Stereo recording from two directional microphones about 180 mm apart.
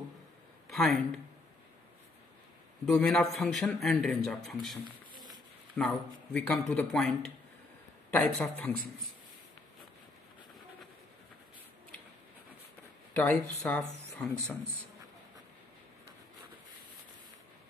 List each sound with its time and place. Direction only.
0.7 s speech: centre (ahead or behind)
2.9 s a man's voice: centre (ahead or behind)
4.8 s a sound: 25° right (ahead or behind)
5.8 s a man's voice: 5° left (ahead or behind)
8.4 s speech: 5° left (ahead or behind)
13.1 s speech: 10° left (ahead or behind)